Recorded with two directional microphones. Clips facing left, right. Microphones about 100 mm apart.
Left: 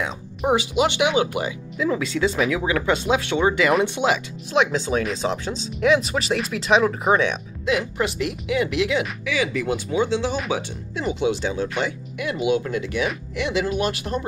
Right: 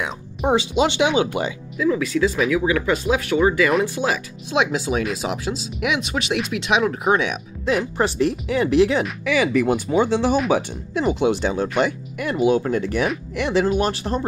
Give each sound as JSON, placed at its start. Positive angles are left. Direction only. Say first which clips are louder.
{"t": 0.5, "sound": "speech", "louder": "right 1 dB", "side_deg": -25}
{"t": 1.8, "sound": "speech", "louder": "right 3 dB", "side_deg": 25}
{"t": 4.5, "sound": "speech", "louder": "even", "side_deg": -15}
{"t": 7.7, "sound": "speech", "louder": "right 2 dB", "side_deg": -35}
{"t": 9.2, "sound": "speech", "louder": "right 5 dB", "side_deg": -55}
{"t": 12.2, "sound": "speech", "louder": "right 3 dB", "side_deg": -40}